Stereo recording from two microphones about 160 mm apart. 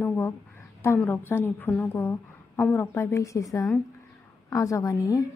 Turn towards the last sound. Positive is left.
turn(degrees=20)  # may be behind; listen again after turning